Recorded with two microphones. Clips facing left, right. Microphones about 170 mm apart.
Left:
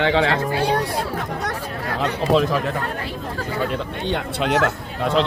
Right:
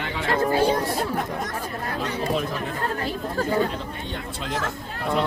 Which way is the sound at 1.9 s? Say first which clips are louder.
Left 7 dB; 85° left.